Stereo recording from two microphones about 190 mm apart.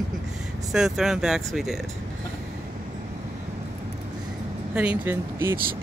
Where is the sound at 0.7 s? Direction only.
Centre (ahead or behind).